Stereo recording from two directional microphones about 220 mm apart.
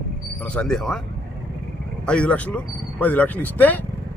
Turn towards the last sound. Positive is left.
turn(degrees=10)  # may be behind; listen again after turning